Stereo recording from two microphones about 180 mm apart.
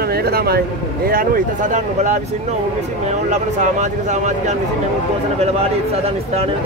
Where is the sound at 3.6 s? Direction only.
40° right (ahead or behind).